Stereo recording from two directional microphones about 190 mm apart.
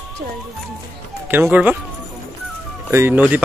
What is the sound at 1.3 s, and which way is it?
Speech, 10° right (ahead or behind).